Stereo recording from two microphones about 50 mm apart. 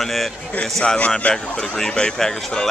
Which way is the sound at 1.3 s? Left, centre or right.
Centre.